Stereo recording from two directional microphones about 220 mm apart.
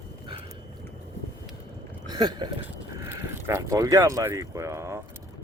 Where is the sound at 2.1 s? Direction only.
20° right (ahead or behind).